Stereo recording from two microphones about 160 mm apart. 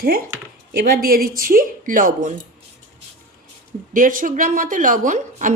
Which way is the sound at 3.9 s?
55° right (ahead or behind).